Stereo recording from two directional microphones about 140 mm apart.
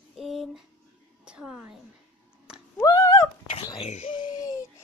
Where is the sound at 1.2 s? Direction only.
5° right (ahead or behind).